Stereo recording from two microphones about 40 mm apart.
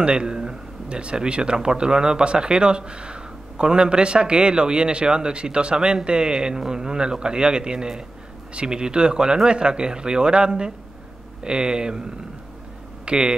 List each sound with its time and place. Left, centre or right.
0.0 s speech: right
13.0 s speech: right